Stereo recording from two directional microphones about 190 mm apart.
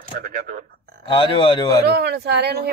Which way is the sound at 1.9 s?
60° right (ahead or behind).